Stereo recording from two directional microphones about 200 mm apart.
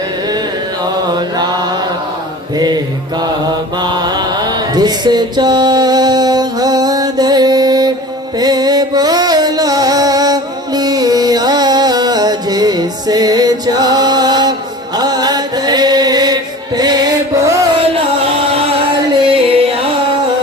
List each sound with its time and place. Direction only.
1.1 s mantra: 20° right (ahead or behind)
8.4 s music: 20° right (ahead or behind)
14.9 s chant: 20° right (ahead or behind)
19.2 s music: 25° right (ahead or behind)